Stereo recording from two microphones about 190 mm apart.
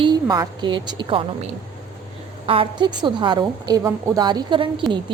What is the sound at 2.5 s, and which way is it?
A woman's voice, 25° right (ahead or behind).